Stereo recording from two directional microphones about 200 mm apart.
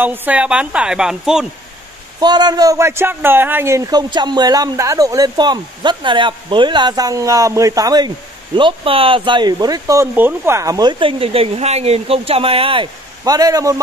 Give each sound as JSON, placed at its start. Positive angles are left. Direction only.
{"t": 0.0, "sound": "a woman's voice", "side_deg": -10}
{"t": 2.1, "sound": "speech", "side_deg": -20}